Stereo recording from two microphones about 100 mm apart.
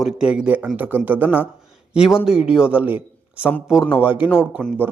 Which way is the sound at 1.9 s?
5° right (ahead or behind).